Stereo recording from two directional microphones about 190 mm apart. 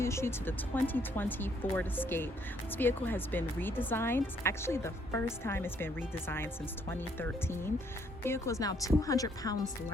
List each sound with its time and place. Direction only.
0.0 s a woman's voice: 15° left (ahead or behind)